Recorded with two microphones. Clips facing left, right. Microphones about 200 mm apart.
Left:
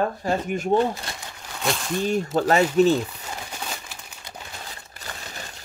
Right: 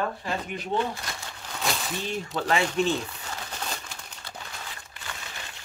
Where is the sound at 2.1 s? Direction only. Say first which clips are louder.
Left 7 dB; 45° left (ahead or behind).